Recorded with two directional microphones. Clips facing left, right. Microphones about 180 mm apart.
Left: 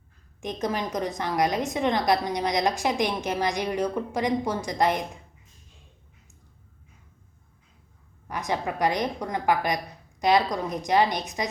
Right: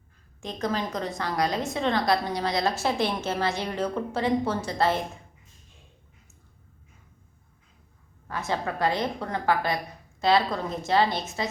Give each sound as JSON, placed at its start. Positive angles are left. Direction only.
{"t": 0.4, "sound": "a woman's voice", "side_deg": 20}
{"t": 8.3, "sound": "a woman's voice", "side_deg": 15}